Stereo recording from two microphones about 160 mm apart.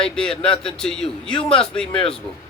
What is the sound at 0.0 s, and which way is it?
A man's voice, 5° left (ahead or behind).